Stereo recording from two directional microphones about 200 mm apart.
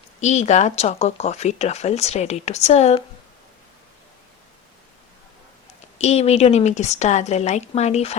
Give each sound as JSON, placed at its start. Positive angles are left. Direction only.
{"t": 0.2, "sound": "speech", "side_deg": 35}
{"t": 6.0, "sound": "speech", "side_deg": 30}